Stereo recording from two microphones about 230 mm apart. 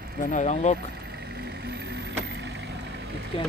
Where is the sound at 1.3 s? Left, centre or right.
Right.